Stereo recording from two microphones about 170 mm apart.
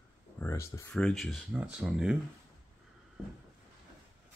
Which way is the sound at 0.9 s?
Centre (ahead or behind).